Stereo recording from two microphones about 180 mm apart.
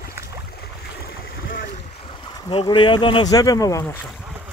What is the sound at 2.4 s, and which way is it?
Speech, 25° left (ahead or behind).